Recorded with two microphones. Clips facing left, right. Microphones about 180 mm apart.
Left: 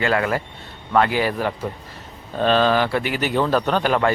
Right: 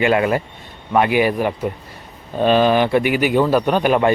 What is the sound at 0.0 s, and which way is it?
Speech, 20° right (ahead or behind).